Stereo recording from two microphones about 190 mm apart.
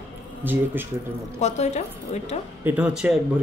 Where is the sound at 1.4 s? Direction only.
35° left (ahead or behind).